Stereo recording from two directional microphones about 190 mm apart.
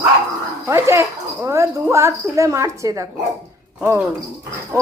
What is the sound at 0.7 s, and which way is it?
Speech, 15° right (ahead or behind).